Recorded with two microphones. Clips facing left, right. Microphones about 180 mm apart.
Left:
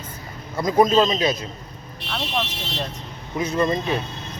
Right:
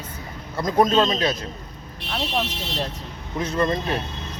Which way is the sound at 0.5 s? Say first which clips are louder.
Left 2 dB; 5° left (ahead or behind).